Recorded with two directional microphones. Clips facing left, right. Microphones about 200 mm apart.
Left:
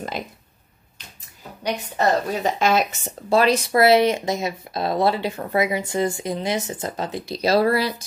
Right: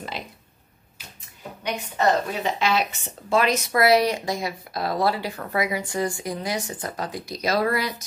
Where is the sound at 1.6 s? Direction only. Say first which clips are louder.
Left 2 dB; 40° left (ahead or behind).